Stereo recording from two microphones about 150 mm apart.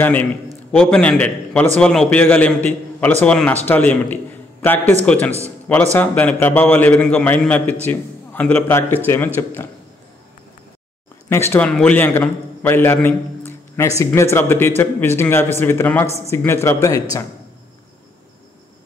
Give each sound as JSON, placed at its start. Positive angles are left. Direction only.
{"t": 0.0, "sound": "a man's voice", "side_deg": 10}
{"t": 11.2, "sound": "a man's voice", "side_deg": 15}